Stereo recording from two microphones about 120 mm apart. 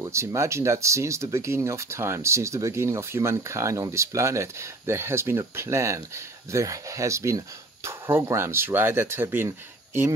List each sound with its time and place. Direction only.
0.0 s speech: 25° right (ahead or behind)